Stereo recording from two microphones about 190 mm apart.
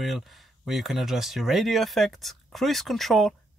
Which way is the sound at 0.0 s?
Centre (ahead or behind).